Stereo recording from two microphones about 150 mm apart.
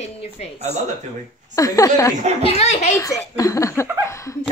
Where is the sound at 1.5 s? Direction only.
25° left (ahead or behind).